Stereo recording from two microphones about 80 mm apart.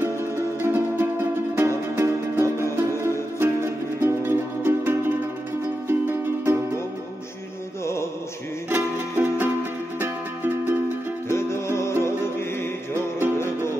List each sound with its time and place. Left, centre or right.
0.0 s music: right
7.8 s music: left
8.6 s music: right
11.2 s music: left